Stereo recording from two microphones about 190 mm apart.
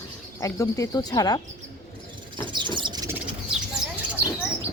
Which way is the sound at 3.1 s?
5° right (ahead or behind).